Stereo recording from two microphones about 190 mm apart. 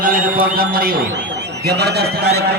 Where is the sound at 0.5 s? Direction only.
55° right (ahead or behind).